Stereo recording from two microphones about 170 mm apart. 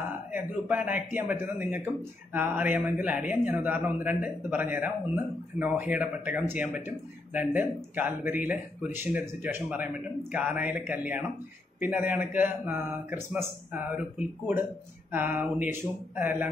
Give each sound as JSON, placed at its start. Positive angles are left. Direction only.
{"t": 0.3, "sound": "a man's voice", "side_deg": -10}